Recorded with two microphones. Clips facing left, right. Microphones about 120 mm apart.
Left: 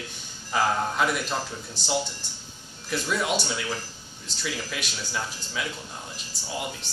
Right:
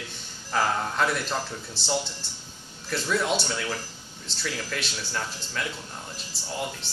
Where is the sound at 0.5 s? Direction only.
5° left (ahead or behind).